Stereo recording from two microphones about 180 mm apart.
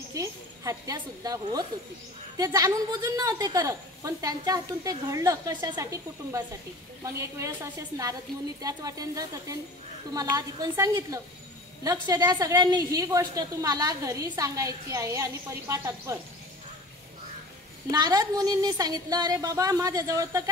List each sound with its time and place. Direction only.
0.1 s a woman's voice: 20° right (ahead or behind)
17.9 s a woman's voice: 20° right (ahead or behind)